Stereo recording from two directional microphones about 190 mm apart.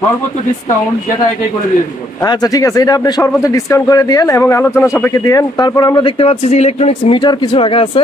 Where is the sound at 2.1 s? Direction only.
20° left (ahead or behind).